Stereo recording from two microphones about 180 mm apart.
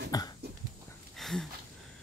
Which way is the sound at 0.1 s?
20° left (ahead or behind).